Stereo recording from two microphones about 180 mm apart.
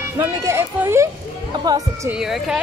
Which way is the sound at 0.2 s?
15° right (ahead or behind).